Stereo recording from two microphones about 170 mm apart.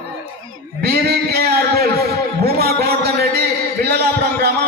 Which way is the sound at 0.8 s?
70° right (ahead or behind).